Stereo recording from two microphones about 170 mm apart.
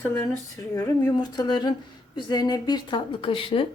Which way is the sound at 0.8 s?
25° left (ahead or behind).